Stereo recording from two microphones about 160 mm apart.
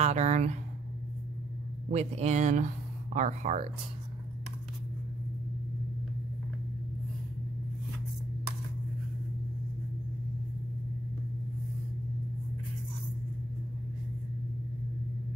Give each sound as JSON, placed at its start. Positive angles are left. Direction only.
{"t": 0.0, "sound": "speech", "side_deg": -45}
{"t": 1.9, "sound": "speech", "side_deg": -45}